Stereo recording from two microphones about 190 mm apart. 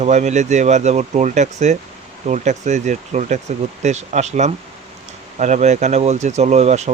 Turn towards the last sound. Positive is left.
turn(degrees=-35)  # may be behind; listen again after turning